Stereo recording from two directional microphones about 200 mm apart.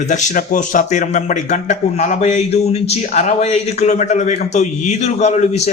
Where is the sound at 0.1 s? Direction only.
40° left (ahead or behind).